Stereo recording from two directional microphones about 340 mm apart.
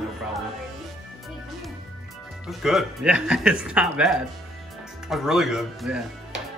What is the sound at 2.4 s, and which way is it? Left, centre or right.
Speech, centre.